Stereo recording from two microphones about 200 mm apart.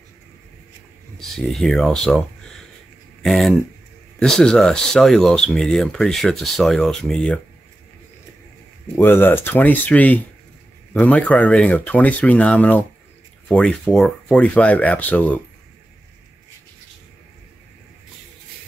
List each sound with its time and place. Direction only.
1.3 s speech: centre (ahead or behind)
8.9 s speech: 10° left (ahead or behind)